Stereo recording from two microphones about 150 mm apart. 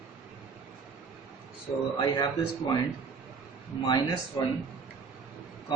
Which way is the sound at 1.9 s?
30° left (ahead or behind).